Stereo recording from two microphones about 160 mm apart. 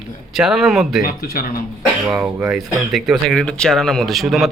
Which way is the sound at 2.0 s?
5° right (ahead or behind).